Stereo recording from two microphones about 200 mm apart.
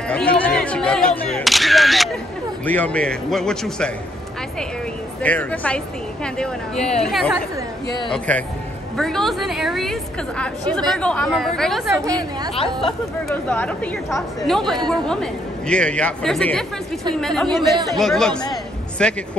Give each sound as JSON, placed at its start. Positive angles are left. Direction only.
{"t": 0.1, "sound": "speech", "side_deg": 5}
{"t": 5.2, "sound": "speech", "side_deg": 5}
{"t": 11.9, "sound": "a woman's voice", "side_deg": -20}
{"t": 13.3, "sound": "speech", "side_deg": 5}
{"t": 18.5, "sound": "music", "side_deg": 5}